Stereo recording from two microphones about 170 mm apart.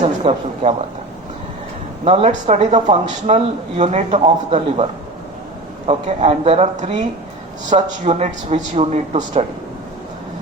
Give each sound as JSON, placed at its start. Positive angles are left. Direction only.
{"t": 0.0, "sound": "a man's voice", "side_deg": -35}
{"t": 2.0, "sound": "a man's voice", "side_deg": -40}